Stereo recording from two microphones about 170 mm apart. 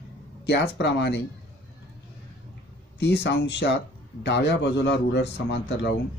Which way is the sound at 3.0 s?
80° left.